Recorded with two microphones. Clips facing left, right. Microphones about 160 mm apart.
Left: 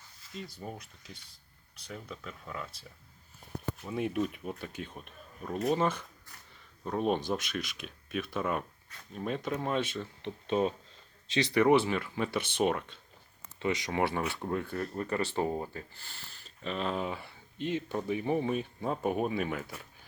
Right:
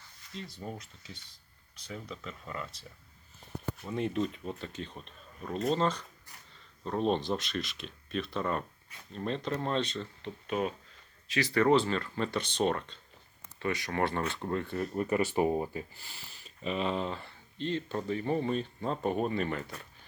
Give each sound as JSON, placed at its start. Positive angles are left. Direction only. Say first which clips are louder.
{"t": 0.6, "sound": "speech", "louder": "right 1 dB", "side_deg": 5}
{"t": 3.8, "sound": "speech", "louder": "even", "side_deg": 10}
{"t": 10.2, "sound": "speech", "louder": "left 4 dB", "side_deg": 30}
{"t": 11.5, "sound": "speech", "louder": "left 1 dB", "side_deg": 15}
{"t": 14.9, "sound": "speech", "louder": "right 4 dB", "side_deg": -10}